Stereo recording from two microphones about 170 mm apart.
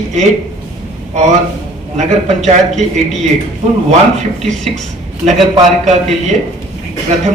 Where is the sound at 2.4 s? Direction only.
40° right (ahead or behind).